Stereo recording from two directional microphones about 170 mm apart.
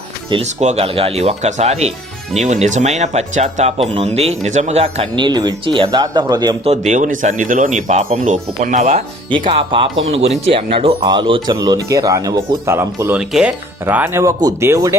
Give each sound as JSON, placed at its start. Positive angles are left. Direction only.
{"t": 0.4, "sound": "speech", "side_deg": -40}
{"t": 6.7, "sound": "speech", "side_deg": -45}